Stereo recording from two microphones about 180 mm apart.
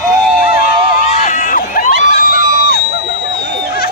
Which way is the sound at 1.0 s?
45° left (ahead or behind).